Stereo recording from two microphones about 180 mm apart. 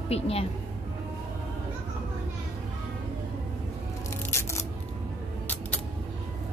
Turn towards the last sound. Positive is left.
turn(degrees=15)  # may be behind; listen again after turning